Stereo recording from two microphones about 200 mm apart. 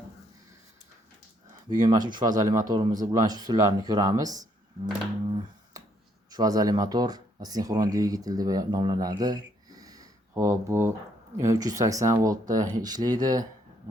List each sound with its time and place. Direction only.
1.7 s speech: 20° right (ahead or behind)
5.7 s a sound: 15° right (ahead or behind)
6.3 s speech: 20° right (ahead or behind)